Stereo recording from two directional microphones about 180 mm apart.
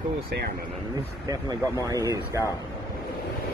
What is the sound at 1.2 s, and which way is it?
Speech, 20° right (ahead or behind).